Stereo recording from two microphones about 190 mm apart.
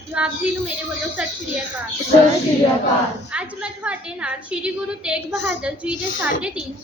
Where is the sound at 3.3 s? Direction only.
5° right (ahead or behind).